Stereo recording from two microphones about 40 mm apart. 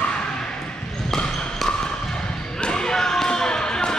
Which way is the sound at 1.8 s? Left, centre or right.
Left.